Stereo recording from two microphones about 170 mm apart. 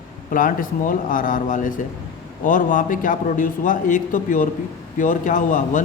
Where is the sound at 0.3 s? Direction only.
55° left (ahead or behind).